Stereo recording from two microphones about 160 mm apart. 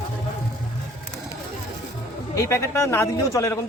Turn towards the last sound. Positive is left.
turn(degrees=20)  # may be behind; listen again after turning